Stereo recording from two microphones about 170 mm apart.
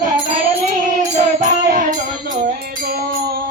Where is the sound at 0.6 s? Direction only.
40° right (ahead or behind).